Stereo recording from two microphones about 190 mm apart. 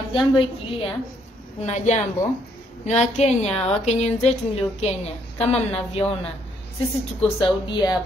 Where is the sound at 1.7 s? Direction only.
40° left (ahead or behind).